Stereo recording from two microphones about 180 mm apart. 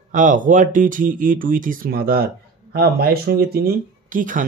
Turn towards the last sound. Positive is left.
turn(degrees=-50)  # may be behind; listen again after turning